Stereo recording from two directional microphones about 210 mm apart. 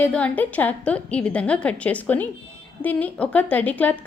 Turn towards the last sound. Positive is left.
turn(degrees=5)  # may be behind; listen again after turning